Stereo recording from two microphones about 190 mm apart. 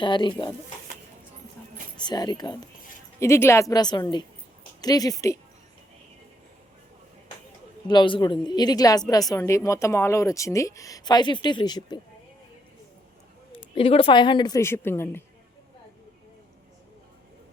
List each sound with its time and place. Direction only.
0.0 s a woman's voice: 25° left (ahead or behind)
2.0 s a woman's voice: 20° left (ahead or behind)
7.9 s a woman's voice: 25° left (ahead or behind)
13.7 s a woman's voice: 30° left (ahead or behind); by 15.2 s 10° left (ahead or behind)